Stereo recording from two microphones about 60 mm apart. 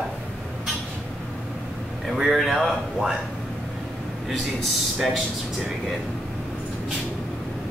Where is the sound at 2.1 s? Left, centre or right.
Centre.